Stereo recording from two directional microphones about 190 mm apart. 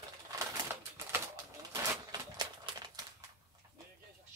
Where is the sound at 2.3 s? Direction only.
20° right (ahead or behind).